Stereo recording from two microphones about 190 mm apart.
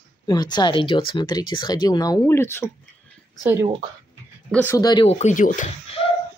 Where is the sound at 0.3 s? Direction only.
20° left (ahead or behind).